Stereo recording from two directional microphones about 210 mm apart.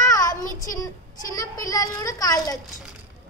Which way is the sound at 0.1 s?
15° left (ahead or behind).